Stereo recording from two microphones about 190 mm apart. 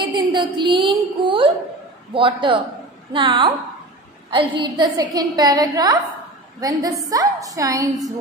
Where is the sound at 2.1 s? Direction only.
25° right (ahead or behind).